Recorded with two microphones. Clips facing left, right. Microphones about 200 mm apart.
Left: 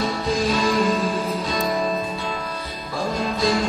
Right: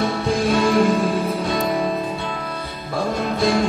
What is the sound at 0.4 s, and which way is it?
Music, 60° right (ahead or behind).